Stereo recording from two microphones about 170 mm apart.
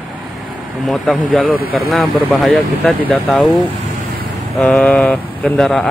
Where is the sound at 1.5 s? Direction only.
60° left (ahead or behind).